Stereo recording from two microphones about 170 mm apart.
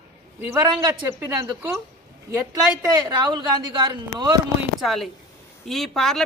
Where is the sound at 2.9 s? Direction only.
25° right (ahead or behind).